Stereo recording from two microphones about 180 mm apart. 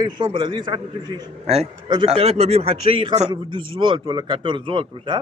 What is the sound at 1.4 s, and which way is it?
A man's voice, 35° right (ahead or behind).